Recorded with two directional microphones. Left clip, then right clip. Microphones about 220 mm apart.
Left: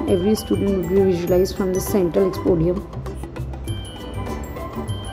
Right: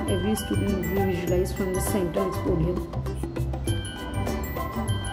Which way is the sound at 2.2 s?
Centre (ahead or behind).